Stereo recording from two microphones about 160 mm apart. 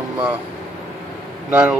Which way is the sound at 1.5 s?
10° right (ahead or behind).